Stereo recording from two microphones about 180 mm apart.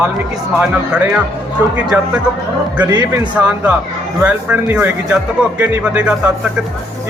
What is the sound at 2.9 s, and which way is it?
Speech, 25° right (ahead or behind).